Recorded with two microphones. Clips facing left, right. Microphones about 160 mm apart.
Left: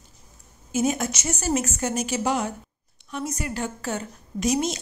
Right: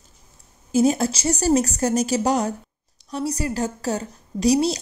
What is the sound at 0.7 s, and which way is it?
A woman's voice, 35° right (ahead or behind).